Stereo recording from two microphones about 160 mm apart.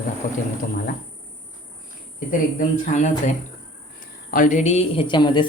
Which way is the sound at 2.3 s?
55° left (ahead or behind).